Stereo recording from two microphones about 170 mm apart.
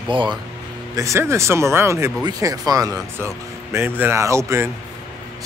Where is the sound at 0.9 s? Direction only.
15° right (ahead or behind).